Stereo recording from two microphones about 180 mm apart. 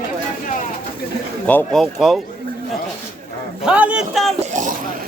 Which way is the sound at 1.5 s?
5° left (ahead or behind).